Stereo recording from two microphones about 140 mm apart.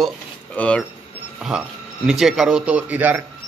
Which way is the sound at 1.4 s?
5° right (ahead or behind).